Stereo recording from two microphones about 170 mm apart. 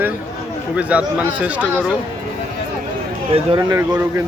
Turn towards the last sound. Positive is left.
turn(degrees=-15)  # may be behind; listen again after turning